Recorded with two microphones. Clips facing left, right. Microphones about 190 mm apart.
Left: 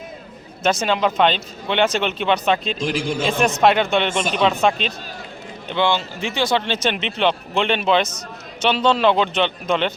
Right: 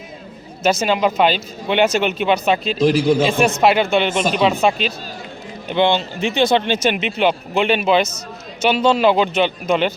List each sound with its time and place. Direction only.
0.6 s speech: 5° right (ahead or behind)
2.7 s speech: 35° right (ahead or behind)
3.6 s speech: 5° right (ahead or behind)
5.6 s speech: 15° right (ahead or behind)
6.8 s speech: 10° right (ahead or behind)